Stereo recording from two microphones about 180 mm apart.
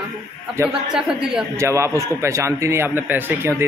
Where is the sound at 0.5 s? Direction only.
10° right (ahead or behind).